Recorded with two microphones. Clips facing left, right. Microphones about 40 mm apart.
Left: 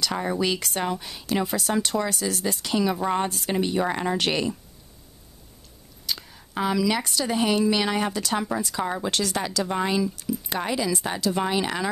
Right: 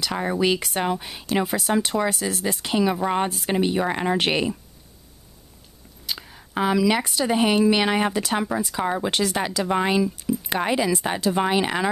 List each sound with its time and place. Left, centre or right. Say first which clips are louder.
0.0 s speech: right 2 dB; centre
6.0 s speech: even; centre